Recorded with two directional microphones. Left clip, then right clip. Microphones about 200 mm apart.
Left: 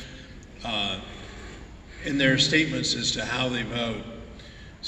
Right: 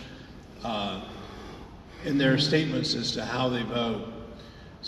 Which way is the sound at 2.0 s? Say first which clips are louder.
Left 3 dB; 45° right (ahead or behind).